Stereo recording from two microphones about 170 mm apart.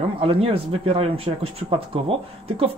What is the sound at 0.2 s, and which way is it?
Speech, 35° right (ahead or behind).